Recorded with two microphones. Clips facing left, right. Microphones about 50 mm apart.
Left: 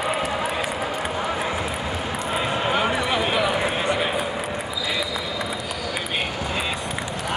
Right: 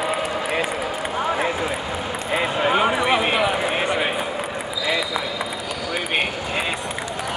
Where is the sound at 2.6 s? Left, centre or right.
Centre.